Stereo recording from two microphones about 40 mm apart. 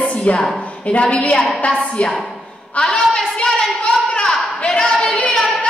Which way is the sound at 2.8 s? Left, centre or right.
Left.